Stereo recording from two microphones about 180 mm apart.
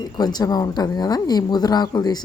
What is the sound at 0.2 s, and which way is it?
Speech, 20° left (ahead or behind).